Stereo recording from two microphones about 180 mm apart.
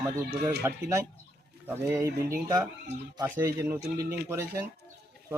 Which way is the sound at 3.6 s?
15° right (ahead or behind).